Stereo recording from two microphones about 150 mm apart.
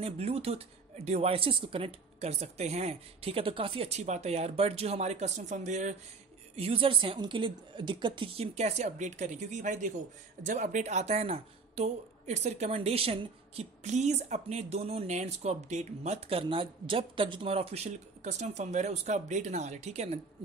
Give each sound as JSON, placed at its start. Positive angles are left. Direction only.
{"t": 0.0, "sound": "speech", "side_deg": -45}
{"t": 6.5, "sound": "a woman's voice", "side_deg": -40}
{"t": 8.5, "sound": "speech", "side_deg": -50}